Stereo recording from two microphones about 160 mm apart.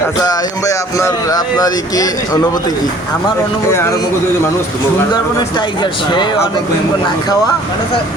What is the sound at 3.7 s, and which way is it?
Speech, 15° left (ahead or behind).